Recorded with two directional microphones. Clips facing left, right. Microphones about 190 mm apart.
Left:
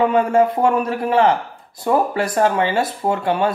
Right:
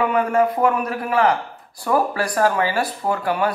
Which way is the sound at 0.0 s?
25° left (ahead or behind).